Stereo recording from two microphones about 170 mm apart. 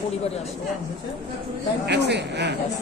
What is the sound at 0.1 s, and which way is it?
Speech, 40° left (ahead or behind).